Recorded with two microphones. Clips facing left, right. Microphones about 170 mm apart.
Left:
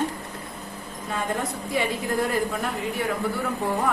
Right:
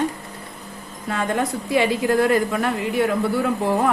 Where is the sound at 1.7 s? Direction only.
85° right.